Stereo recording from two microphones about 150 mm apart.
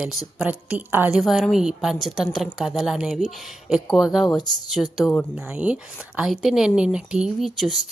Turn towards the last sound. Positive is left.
turn(degrees=0)  # may be behind; listen again after turning